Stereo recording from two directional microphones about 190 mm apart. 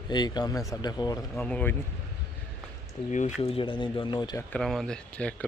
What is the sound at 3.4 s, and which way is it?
Speech, 30° left (ahead or behind).